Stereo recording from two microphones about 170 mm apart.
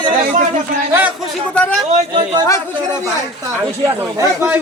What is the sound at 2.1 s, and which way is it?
Speech, 25° right (ahead or behind).